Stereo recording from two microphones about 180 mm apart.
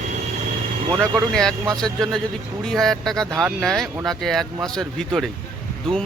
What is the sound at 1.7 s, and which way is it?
Speech, 5° left (ahead or behind).